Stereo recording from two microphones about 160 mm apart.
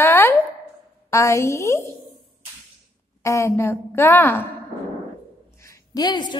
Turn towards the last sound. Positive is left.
turn(degrees=25)  # may be behind; listen again after turning